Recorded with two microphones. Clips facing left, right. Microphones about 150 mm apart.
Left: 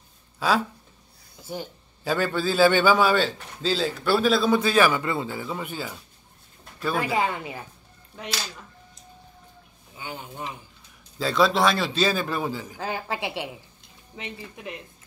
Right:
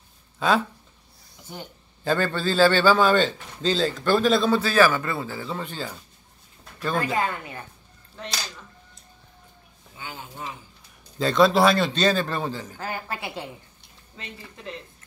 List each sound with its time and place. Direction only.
0.4 s speech: 5° left (ahead or behind)
2.0 s a man's voice: 10° left (ahead or behind)
4.6 s a man's voice: 20° left (ahead or behind)
11.1 s a man's voice: centre (ahead or behind)